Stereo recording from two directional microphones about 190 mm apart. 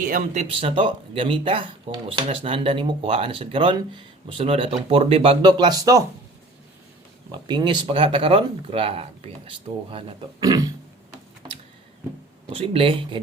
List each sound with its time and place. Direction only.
0.0 s speech: 45° right (ahead or behind)
0.6 s speech: 25° right (ahead or behind)
7.3 s speech: 25° right (ahead or behind)
12.5 s speech: 30° right (ahead or behind)